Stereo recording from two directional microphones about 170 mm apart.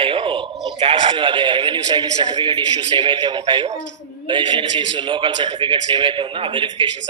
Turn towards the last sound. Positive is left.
turn(degrees=-30)  # may be behind; listen again after turning